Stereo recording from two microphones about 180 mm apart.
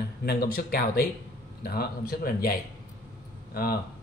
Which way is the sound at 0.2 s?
55° left (ahead or behind).